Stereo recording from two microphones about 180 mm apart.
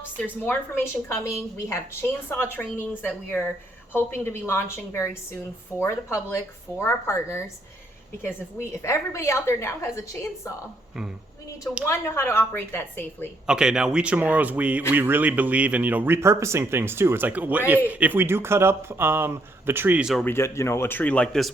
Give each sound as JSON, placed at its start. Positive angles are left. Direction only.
{"t": 0.2, "sound": "a woman's voice", "side_deg": 10}
{"t": 8.8, "sound": "a woman's voice", "side_deg": 15}
{"t": 11.9, "sound": "a woman's voice", "side_deg": 15}
{"t": 13.5, "sound": "speech", "side_deg": -5}
{"t": 20.2, "sound": "a woman's voice", "side_deg": 15}